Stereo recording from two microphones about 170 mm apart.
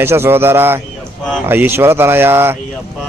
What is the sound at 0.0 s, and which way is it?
Speech, 15° right (ahead or behind).